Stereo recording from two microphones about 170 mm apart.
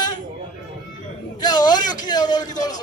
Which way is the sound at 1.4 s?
25° left (ahead or behind).